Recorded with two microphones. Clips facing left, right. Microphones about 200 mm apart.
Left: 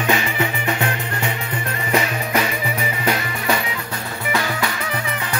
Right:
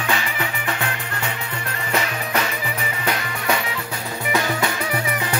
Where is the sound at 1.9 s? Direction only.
10° left (ahead or behind).